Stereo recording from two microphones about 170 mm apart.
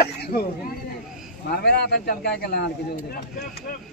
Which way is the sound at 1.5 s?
75° left (ahead or behind).